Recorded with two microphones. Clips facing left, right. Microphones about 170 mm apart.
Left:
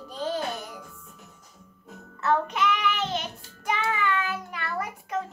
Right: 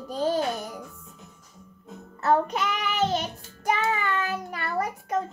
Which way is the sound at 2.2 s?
40° right (ahead or behind).